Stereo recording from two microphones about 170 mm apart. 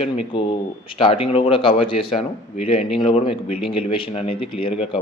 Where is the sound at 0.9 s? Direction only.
30° left (ahead or behind).